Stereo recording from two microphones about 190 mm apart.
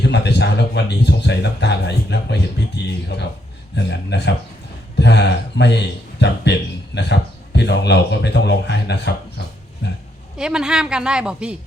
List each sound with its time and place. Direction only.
0.0 s speech: 65° left (ahead or behind)
10.3 s a woman's voice: 5° right (ahead or behind)